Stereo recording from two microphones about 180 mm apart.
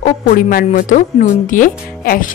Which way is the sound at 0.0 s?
50° left (ahead or behind).